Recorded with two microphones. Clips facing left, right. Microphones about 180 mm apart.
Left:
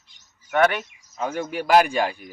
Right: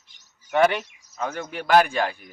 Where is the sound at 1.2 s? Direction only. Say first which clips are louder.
Left 3 dB; 5° left (ahead or behind).